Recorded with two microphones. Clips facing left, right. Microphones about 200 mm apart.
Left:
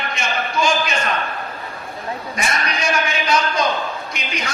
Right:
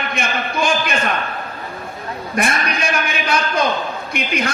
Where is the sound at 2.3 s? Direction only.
55° right (ahead or behind).